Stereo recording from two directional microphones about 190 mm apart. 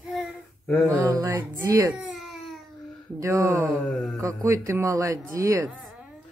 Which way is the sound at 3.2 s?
15° right (ahead or behind).